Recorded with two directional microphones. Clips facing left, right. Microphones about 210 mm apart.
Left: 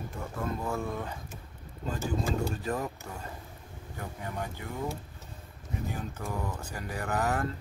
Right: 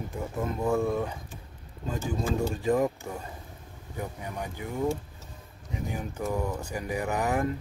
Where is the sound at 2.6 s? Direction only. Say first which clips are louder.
Right 8 dB; 15° right (ahead or behind).